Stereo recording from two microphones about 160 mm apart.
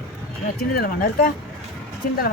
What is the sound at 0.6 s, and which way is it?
Speech, 65° left (ahead or behind).